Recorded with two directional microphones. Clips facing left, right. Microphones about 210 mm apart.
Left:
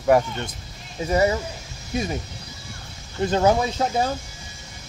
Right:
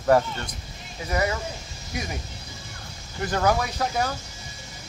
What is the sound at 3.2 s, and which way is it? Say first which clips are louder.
Speech: left 4 dB; 25° left (ahead or behind).